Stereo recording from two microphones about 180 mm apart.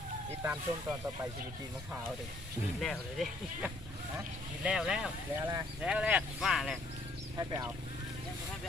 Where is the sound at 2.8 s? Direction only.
Centre (ahead or behind).